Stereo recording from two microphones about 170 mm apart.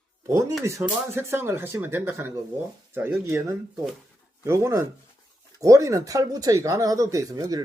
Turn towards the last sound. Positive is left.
turn(degrees=-20)  # may be behind; listen again after turning